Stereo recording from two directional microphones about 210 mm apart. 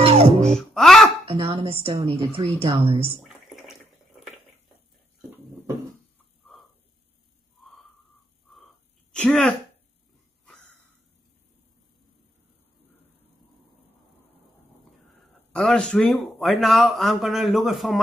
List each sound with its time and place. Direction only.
0.0 s music: 30° right (ahead or behind)
0.6 s music: centre (ahead or behind)
1.2 s speech: 25° right (ahead or behind)
9.1 s speech: 5° left (ahead or behind)
15.5 s a man's voice: centre (ahead or behind)